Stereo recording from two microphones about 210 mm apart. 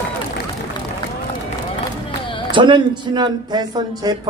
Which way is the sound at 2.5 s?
20° right (ahead or behind).